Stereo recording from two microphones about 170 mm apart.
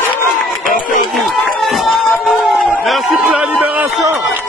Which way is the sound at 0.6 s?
55° left (ahead or behind).